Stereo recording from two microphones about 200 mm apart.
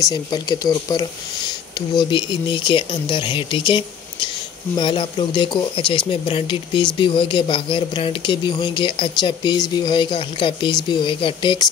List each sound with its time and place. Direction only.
0.0 s speech: 20° left (ahead or behind)